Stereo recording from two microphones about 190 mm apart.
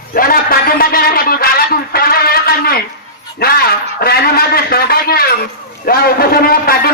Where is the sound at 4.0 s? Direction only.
55° left (ahead or behind).